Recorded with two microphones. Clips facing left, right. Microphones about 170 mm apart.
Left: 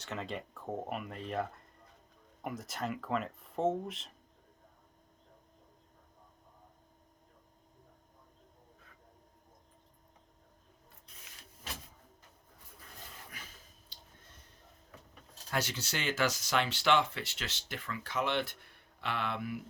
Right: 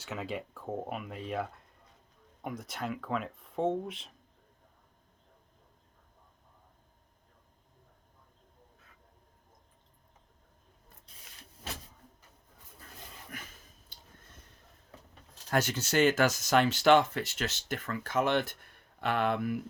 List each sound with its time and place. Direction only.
0.0 s speech: 5° right (ahead or behind)
13.3 s a sound: 55° right (ahead or behind)
15.4 s speech: 50° right (ahead or behind)